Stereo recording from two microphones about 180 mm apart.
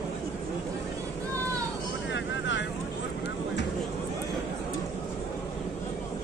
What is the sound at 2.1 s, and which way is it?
Vehicle, 85° left.